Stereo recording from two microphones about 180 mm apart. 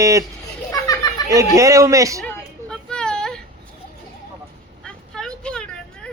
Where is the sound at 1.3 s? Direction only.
20° right (ahead or behind).